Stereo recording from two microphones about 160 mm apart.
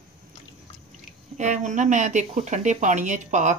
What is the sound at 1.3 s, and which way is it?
Speech, 50° right (ahead or behind).